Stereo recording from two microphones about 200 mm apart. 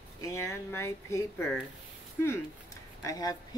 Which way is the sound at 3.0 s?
15° left (ahead or behind).